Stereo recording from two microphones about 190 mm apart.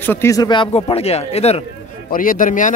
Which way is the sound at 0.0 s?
10° left (ahead or behind).